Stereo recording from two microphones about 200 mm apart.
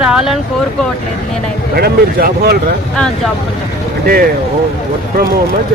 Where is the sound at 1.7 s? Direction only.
50° right (ahead or behind).